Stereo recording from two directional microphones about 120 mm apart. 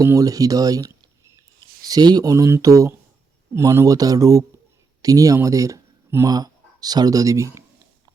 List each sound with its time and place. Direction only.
0.0 s speech: 25° right (ahead or behind)